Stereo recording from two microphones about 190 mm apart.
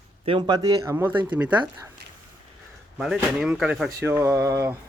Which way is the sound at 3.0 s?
5° right (ahead or behind).